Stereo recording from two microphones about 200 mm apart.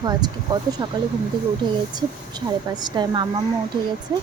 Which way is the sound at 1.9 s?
20° right (ahead or behind).